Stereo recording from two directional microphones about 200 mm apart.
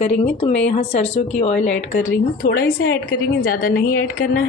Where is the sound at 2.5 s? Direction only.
50° left (ahead or behind).